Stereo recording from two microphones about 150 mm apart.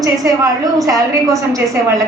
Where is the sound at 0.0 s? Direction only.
20° right (ahead or behind).